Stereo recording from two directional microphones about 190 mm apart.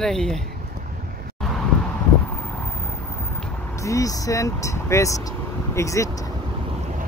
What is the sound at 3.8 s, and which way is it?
Speech, 15° left (ahead or behind).